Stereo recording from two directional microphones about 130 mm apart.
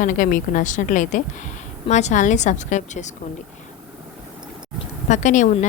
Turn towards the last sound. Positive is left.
turn(degrees=65)  # may be behind; listen again after turning